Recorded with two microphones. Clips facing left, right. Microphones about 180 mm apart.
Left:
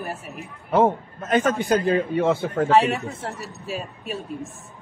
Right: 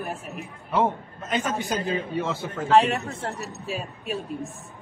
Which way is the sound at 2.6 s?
Centre (ahead or behind).